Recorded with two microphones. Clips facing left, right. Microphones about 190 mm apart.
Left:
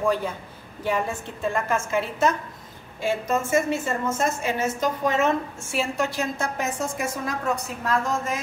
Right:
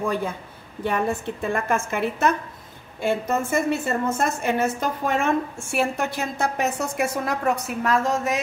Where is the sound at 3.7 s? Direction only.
60° right (ahead or behind).